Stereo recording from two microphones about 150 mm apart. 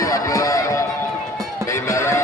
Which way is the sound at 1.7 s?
20° left (ahead or behind).